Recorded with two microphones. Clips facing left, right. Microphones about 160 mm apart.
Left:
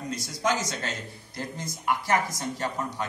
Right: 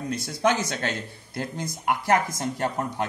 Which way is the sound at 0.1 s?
60° right (ahead or behind).